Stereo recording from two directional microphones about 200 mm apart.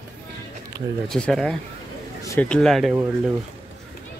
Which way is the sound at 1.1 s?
Centre (ahead or behind).